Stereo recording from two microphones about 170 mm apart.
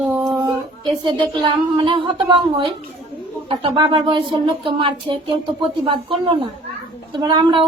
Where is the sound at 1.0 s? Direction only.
25° right (ahead or behind).